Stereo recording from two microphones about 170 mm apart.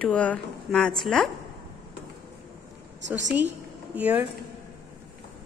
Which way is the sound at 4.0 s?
10° right (ahead or behind).